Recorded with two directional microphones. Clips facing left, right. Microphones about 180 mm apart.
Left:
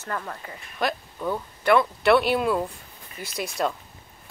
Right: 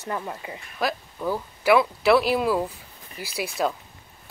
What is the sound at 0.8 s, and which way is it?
Speech, 5° right (ahead or behind).